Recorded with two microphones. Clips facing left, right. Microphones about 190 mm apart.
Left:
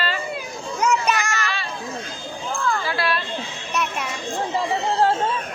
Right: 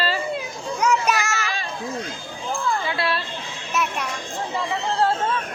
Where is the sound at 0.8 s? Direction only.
Centre (ahead or behind).